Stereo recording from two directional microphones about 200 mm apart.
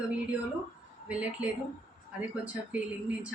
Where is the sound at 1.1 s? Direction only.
5° right (ahead or behind).